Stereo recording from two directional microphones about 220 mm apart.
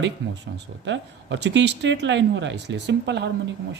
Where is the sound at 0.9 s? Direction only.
55° right (ahead or behind).